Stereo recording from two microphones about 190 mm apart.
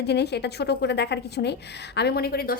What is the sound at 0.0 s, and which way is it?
A woman's voice, 60° left (ahead or behind).